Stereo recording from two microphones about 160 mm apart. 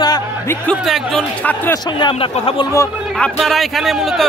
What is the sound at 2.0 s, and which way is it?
Speech, 30° left (ahead or behind).